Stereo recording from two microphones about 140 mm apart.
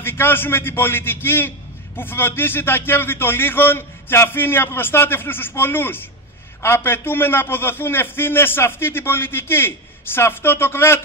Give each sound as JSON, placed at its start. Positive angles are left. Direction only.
{"t": 0.0, "sound": "a man's voice", "side_deg": 15}